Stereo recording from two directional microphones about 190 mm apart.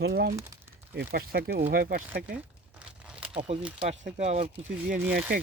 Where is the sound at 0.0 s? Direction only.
55° right (ahead or behind).